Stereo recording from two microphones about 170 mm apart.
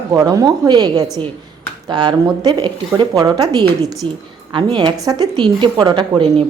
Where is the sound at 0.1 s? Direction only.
20° right (ahead or behind).